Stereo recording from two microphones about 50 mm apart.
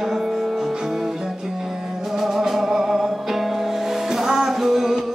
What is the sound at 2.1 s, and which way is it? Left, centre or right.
Music, centre.